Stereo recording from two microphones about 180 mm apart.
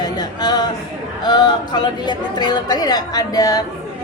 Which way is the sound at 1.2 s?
20° left (ahead or behind).